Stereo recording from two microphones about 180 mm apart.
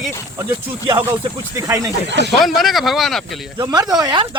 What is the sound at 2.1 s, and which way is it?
Speech, 75° right (ahead or behind).